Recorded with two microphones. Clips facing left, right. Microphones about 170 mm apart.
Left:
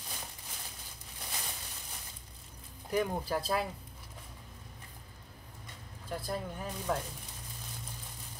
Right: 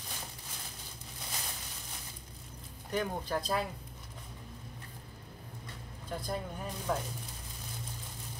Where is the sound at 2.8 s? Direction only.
5° left (ahead or behind).